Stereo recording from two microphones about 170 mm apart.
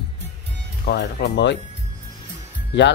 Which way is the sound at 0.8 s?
85° left.